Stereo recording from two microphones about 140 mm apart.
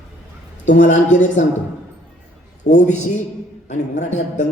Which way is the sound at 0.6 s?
60° left (ahead or behind).